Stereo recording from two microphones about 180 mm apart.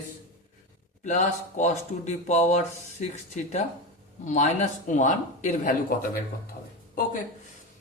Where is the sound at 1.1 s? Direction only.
40° left (ahead or behind).